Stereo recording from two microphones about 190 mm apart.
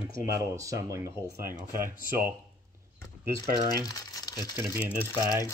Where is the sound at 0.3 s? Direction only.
15° right (ahead or behind).